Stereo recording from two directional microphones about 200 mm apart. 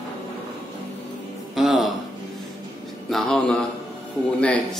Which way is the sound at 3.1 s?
Centre (ahead or behind).